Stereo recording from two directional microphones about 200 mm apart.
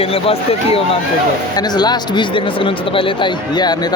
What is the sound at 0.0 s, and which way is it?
Speech, 30° left (ahead or behind).